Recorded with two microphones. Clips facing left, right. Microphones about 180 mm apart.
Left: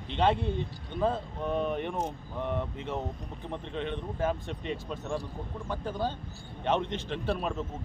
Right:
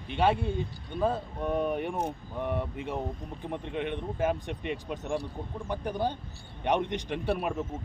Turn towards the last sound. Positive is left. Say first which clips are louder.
# right 2 dB
turn(degrees=-10)  # may be behind; listen again after turning